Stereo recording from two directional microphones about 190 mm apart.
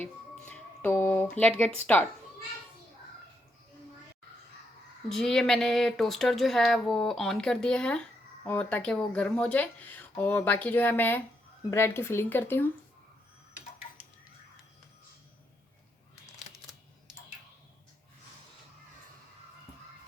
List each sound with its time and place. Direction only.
0.0 s speech: 10° left (ahead or behind)
5.0 s speech: centre (ahead or behind)